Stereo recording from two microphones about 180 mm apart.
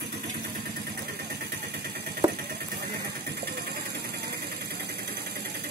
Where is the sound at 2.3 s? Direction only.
60° right (ahead or behind).